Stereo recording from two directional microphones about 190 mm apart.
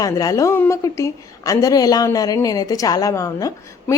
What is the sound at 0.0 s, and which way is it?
Speech, 20° left (ahead or behind).